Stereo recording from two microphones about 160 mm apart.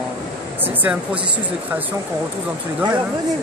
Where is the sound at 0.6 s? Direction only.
10° right (ahead or behind).